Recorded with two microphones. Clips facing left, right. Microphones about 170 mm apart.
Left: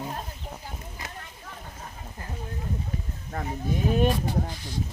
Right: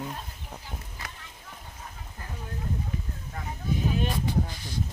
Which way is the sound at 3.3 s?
45° left (ahead or behind).